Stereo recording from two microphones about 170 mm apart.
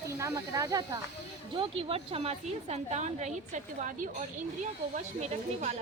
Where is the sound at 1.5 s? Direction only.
35° right (ahead or behind).